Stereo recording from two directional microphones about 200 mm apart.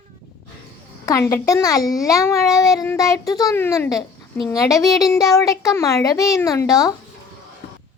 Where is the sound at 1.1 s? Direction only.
15° left (ahead or behind).